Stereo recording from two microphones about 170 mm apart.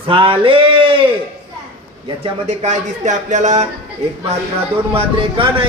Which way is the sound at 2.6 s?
45° right (ahead or behind).